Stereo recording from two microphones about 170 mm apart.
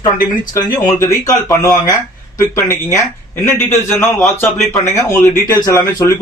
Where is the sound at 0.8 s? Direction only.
20° left (ahead or behind).